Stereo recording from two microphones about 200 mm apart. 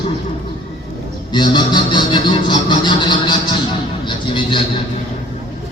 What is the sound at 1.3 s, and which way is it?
Speech, 20° left (ahead or behind).